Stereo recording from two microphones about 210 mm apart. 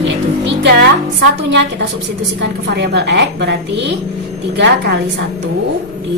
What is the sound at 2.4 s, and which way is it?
A woman's voice, 55° right (ahead or behind).